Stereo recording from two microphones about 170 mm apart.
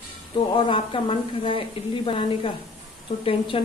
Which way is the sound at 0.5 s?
30° left (ahead or behind).